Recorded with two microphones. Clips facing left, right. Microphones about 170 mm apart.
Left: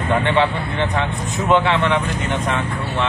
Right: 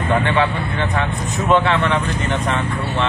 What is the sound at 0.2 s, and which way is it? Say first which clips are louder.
Speech: even; 25° left (ahead or behind).